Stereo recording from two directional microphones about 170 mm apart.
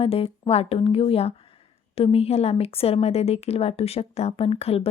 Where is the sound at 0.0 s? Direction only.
35° left (ahead or behind).